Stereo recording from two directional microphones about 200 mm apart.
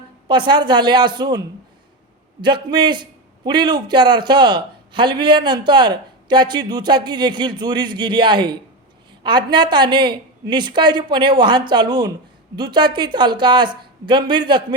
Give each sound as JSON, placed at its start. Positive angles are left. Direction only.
{"t": 0.3, "sound": "a man's voice", "side_deg": -25}